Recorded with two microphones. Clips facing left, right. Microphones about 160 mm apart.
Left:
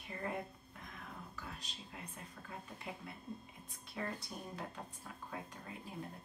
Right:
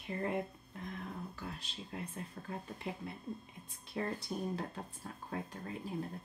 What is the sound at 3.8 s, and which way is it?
Speech, 30° right (ahead or behind).